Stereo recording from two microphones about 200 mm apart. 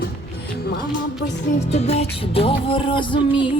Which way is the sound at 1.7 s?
30° left (ahead or behind).